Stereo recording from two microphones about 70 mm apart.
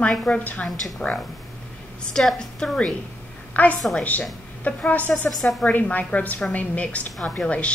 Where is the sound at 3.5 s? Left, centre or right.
Left.